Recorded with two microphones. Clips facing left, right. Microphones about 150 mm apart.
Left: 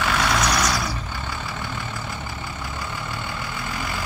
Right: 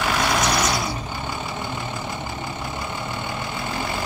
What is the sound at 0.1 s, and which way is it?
Vehicle, 25° right (ahead or behind).